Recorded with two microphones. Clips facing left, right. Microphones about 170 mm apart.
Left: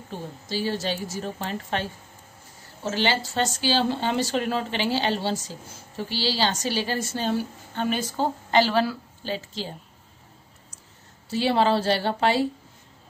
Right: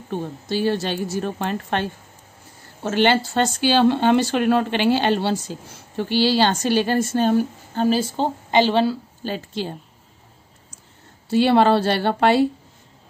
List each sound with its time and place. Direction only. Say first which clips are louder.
0.1 s speech: right 7 dB; 60° right (ahead or behind)
7.7 s a woman's voice: right 7 dB; 35° right (ahead or behind)
9.2 s speech: right 3 dB; 55° right (ahead or behind)
11.2 s speech: right 6 dB; 60° right (ahead or behind)